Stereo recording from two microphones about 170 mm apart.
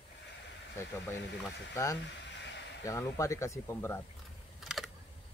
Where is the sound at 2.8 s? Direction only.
15° left (ahead or behind).